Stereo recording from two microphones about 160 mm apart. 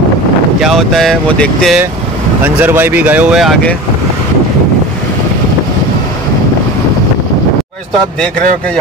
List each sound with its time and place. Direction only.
0.6 s speech: centre (ahead or behind)
2.4 s speech: 10° right (ahead or behind)